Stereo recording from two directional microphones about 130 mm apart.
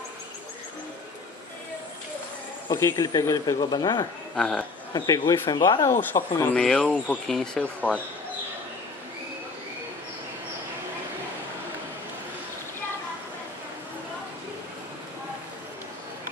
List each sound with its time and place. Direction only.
2.7 s speech: 30° left (ahead or behind)
4.4 s speech: 5° left (ahead or behind)
4.9 s speech: 30° left (ahead or behind)
6.5 s speech: 5° left (ahead or behind)